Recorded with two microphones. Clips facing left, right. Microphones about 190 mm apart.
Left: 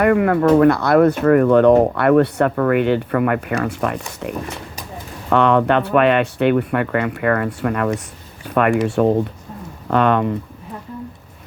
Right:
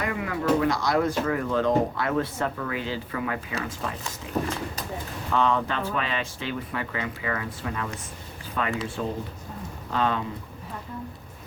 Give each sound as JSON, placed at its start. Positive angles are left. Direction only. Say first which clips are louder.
{"t": 0.0, "sound": "speech", "louder": "left 13 dB", "side_deg": 60}